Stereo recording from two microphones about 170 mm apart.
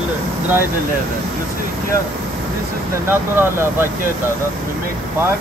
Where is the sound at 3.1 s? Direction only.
15° right (ahead or behind).